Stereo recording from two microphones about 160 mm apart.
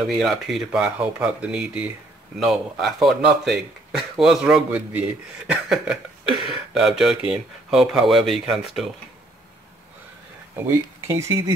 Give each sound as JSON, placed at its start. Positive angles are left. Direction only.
{"t": 0.0, "sound": "speech", "side_deg": 0}
{"t": 10.7, "sound": "speech", "side_deg": -15}